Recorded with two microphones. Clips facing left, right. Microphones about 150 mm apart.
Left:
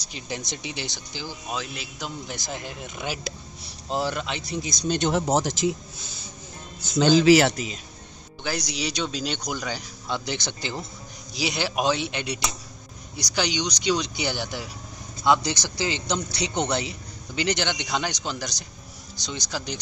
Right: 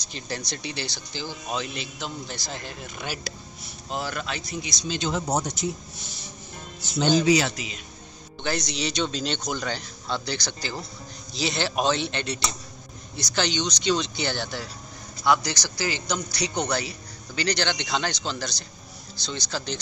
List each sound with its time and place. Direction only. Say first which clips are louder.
0.0 s speech: even; 15° left (ahead or behind)
3.9 s a man's voice: left 4 dB; 25° left (ahead or behind)
4.6 s speech: left 7 dB; 55° left (ahead or behind); by 5.8 s 90° left
7.1 s speech: left 4 dB; 90° left
7.5 s a man's voice: left 4 dB; 40° left (ahead or behind)
8.5 s a man's voice: right 1 dB; 10° left (ahead or behind)